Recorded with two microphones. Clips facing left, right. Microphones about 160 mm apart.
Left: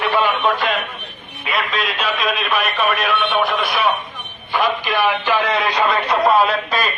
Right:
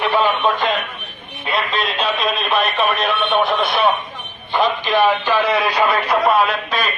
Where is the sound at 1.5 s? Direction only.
Centre (ahead or behind).